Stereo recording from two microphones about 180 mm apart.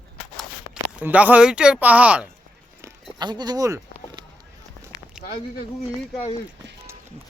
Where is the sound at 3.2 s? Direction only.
25° right (ahead or behind).